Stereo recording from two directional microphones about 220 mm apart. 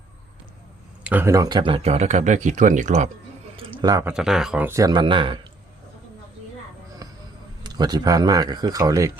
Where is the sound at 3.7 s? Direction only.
15° right (ahead or behind).